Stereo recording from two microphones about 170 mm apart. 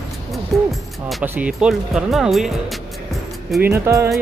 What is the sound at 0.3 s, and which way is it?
Music, centre (ahead or behind).